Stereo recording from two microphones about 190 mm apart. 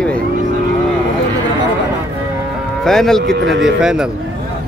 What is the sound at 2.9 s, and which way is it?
Speech, centre (ahead or behind).